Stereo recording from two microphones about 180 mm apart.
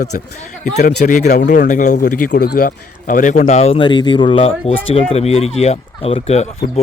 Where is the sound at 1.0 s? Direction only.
45° left (ahead or behind).